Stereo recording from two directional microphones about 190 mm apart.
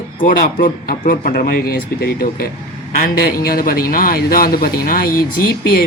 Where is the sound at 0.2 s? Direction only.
45° left (ahead or behind).